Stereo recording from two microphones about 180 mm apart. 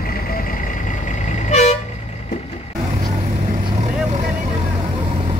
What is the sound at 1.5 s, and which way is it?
Vehicle, 40° left (ahead or behind).